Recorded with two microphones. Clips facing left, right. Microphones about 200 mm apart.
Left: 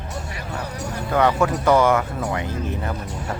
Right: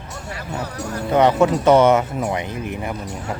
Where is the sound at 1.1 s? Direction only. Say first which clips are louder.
Right 4 dB; 20° right (ahead or behind).